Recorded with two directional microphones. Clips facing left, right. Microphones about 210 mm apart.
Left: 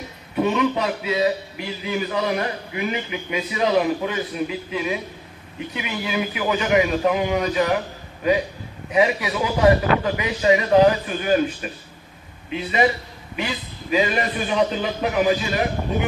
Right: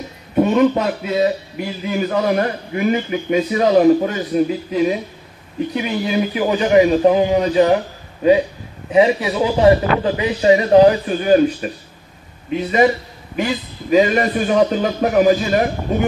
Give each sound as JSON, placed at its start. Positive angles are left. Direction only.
{"t": 0.4, "sound": "a man's voice", "side_deg": -45}
{"t": 8.9, "sound": "a man's voice", "side_deg": -30}